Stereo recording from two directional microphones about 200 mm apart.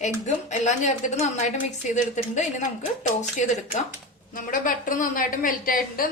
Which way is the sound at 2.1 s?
35° left (ahead or behind).